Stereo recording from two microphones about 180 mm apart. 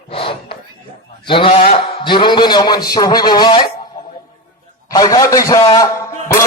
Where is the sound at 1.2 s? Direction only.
30° left (ahead or behind).